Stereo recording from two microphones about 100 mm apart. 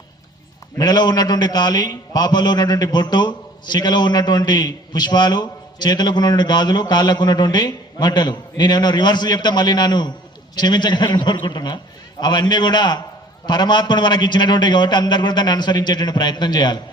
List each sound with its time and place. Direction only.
0.8 s a man's voice: 40° left (ahead or behind)